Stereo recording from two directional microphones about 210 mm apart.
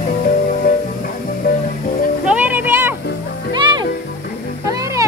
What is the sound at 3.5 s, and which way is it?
Music, 20° right (ahead or behind).